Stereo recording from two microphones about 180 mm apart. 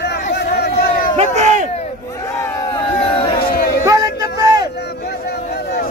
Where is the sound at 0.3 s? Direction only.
65° left (ahead or behind).